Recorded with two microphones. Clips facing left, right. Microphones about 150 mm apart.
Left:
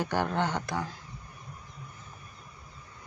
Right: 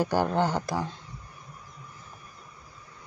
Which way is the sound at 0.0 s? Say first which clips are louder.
Right 4 dB; 40° right (ahead or behind).